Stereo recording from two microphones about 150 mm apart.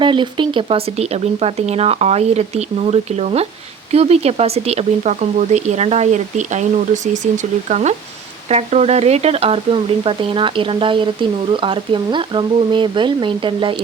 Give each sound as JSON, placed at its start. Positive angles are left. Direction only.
{"t": 0.0, "sound": "speech", "side_deg": -35}